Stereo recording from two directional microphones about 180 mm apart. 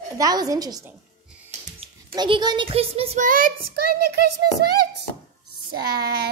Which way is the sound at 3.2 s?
50° right (ahead or behind).